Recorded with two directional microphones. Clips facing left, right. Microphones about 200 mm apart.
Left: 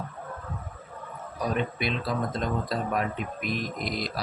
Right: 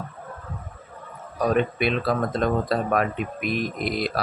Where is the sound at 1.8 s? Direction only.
65° right (ahead or behind).